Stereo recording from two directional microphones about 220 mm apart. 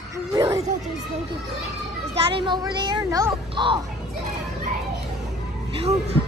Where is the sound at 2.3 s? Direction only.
20° right (ahead or behind).